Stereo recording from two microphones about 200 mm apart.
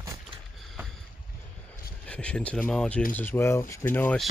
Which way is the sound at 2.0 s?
5° left (ahead or behind).